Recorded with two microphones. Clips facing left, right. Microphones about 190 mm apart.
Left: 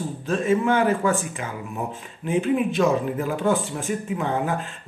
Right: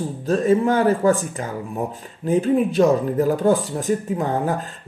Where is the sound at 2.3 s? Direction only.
40° right (ahead or behind).